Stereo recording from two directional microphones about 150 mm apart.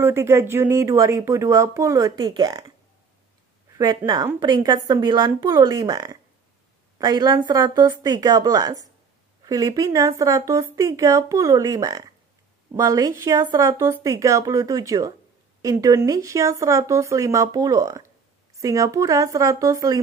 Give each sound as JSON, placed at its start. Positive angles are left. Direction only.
{"t": 0.0, "sound": "speech", "side_deg": -15}
{"t": 3.7, "sound": "speech", "side_deg": -25}